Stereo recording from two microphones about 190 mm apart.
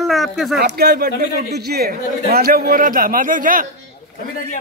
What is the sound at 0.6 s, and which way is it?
Speech, 60° right (ahead or behind).